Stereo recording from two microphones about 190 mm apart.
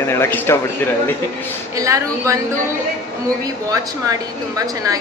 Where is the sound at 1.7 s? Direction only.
15° right (ahead or behind).